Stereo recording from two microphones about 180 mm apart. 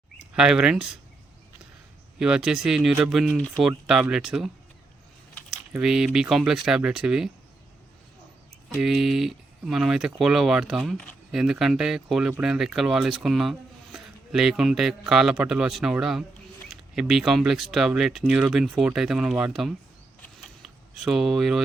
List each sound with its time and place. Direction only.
0.2 s speech: 5° right (ahead or behind)
2.1 s speech: 5° right (ahead or behind)
5.5 s typing: 5° right (ahead or behind)
6.1 s speech: 5° right (ahead or behind)
8.8 s speech: centre (ahead or behind)
20.2 s a sound: centre (ahead or behind)